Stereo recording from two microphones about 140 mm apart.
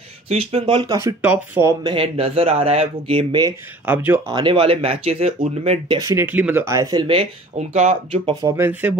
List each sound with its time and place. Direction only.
0.3 s speech: 50° right (ahead or behind)
0.7 s speech: 35° right (ahead or behind)
1.2 s speech: 10° right (ahead or behind)
1.8 s speech: 40° right (ahead or behind)
3.8 s speech: 10° right (ahead or behind)
4.3 s speech: 35° right (ahead or behind)
5.9 s speech: 20° right (ahead or behind)
7.7 s speech: 55° right (ahead or behind)
8.4 s speech: 15° right (ahead or behind)